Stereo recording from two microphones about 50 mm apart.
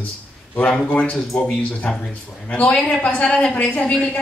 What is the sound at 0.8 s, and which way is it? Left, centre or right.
A man's voice, left.